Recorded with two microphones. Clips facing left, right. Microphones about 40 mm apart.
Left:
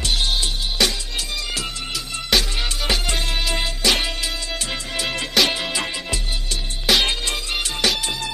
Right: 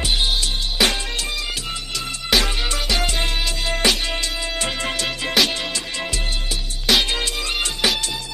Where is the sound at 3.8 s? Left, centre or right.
Right.